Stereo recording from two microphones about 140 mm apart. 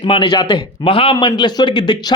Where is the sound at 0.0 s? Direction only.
35° left (ahead or behind).